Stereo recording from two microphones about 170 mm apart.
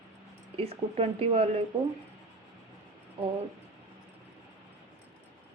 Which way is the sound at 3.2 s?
35° right (ahead or behind).